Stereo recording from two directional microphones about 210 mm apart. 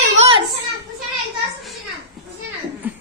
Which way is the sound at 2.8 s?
10° right (ahead or behind).